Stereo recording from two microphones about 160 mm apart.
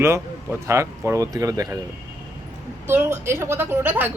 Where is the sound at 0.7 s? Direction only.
20° right (ahead or behind).